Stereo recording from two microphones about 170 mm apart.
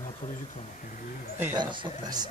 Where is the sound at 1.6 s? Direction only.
30° right (ahead or behind).